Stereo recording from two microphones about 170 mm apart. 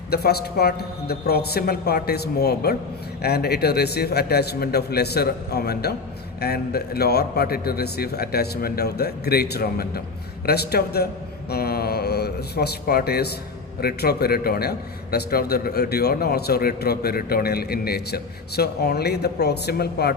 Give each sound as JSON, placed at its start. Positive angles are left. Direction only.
{"t": 0.1, "sound": "a man's voice", "side_deg": 65}